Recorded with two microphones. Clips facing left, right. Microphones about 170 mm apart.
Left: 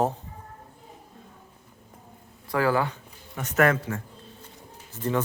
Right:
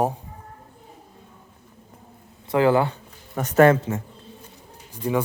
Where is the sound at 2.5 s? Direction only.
25° right (ahead or behind).